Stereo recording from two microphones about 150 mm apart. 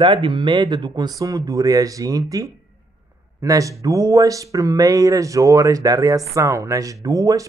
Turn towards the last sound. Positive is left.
turn(degrees=-20)  # may be behind; listen again after turning